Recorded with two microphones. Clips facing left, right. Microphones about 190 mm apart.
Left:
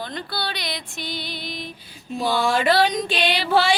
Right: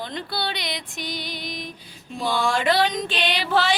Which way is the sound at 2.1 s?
5° left (ahead or behind).